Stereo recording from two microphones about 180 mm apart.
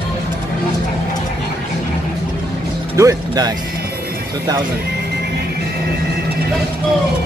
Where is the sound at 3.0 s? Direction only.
20° right (ahead or behind).